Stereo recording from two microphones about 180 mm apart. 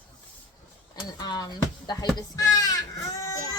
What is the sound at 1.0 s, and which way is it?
A woman's voice, 20° left (ahead or behind).